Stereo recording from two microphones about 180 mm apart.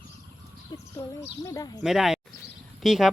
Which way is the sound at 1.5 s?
20° left (ahead or behind).